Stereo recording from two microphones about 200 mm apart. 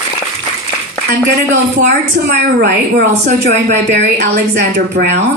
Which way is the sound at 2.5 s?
50° right (ahead or behind).